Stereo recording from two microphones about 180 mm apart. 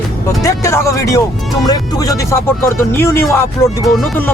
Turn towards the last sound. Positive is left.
turn(degrees=15)  # may be behind; listen again after turning